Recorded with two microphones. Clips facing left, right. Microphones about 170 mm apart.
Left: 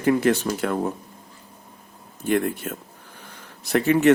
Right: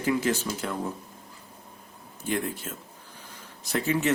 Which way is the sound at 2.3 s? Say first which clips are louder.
Left 7 dB; 60° left (ahead or behind).